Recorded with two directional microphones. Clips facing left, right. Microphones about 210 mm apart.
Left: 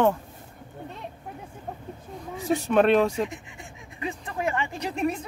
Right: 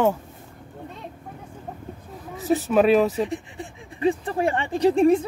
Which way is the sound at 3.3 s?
35° right (ahead or behind).